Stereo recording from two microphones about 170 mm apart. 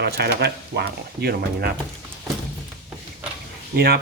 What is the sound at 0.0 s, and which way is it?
Speech, 70° right (ahead or behind).